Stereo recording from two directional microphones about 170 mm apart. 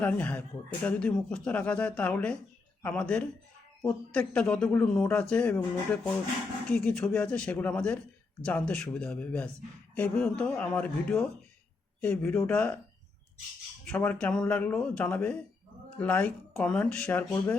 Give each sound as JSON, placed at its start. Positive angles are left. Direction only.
{"t": 0.0, "sound": "speech", "side_deg": 10}
{"t": 13.8, "sound": "speech", "side_deg": 5}